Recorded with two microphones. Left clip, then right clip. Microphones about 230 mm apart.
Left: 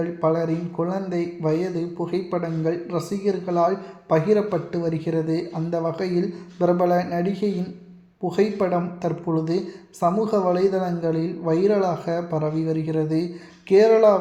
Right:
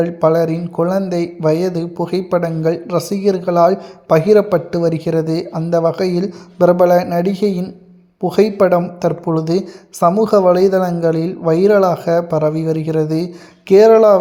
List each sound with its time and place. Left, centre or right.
0.0 s speech: right